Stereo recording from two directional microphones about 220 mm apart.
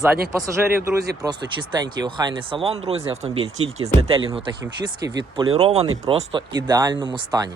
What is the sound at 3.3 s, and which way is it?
Speech, 70° right (ahead or behind).